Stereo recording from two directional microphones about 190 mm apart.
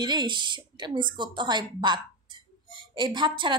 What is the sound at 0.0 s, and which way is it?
A woman's voice, 25° right (ahead or behind).